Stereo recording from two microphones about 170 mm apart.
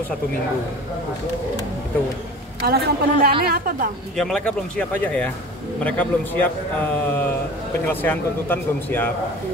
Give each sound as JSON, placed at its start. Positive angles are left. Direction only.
{"t": 2.6, "sound": "a woman's voice", "side_deg": -65}
{"t": 4.2, "sound": "a man's voice", "side_deg": 5}